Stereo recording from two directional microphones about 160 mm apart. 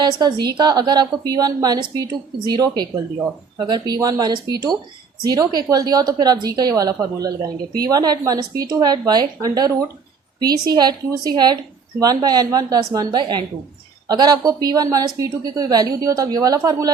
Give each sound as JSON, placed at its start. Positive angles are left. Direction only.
{"t": 0.0, "sound": "a woman's voice", "side_deg": -25}